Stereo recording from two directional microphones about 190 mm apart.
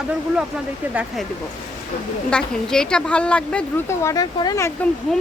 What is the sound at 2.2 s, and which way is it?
Speech, 5° left (ahead or behind).